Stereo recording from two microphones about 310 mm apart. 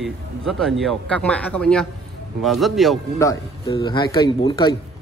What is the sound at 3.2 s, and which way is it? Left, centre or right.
Speech, centre.